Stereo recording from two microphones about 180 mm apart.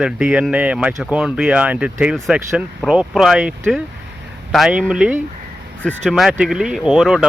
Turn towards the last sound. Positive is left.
turn(degrees=0)  # may be behind; listen again after turning